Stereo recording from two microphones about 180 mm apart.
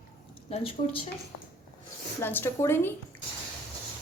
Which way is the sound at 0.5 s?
30° left (ahead or behind).